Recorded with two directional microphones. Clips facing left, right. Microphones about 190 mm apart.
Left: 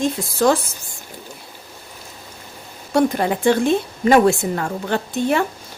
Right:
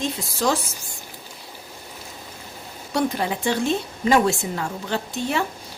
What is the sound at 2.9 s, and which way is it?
A woman's voice, 50° left (ahead or behind).